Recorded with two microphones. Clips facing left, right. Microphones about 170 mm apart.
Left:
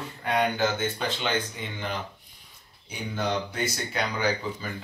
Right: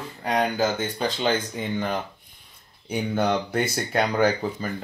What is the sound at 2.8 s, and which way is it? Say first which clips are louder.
Speech: right 7 dB; 55° right (ahead or behind).